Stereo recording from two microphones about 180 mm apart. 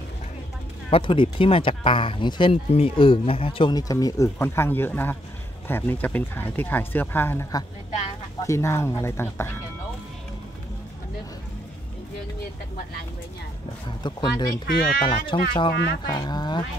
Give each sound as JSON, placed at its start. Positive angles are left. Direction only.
{"t": 0.8, "sound": "speech", "side_deg": 30}
{"t": 14.0, "sound": "speech", "side_deg": 20}
{"t": 15.7, "sound": "speech", "side_deg": 60}
{"t": 16.1, "sound": "speech", "side_deg": 20}